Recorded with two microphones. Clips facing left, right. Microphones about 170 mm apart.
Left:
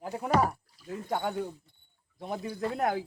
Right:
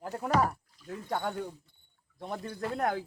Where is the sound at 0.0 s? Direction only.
5° left (ahead or behind).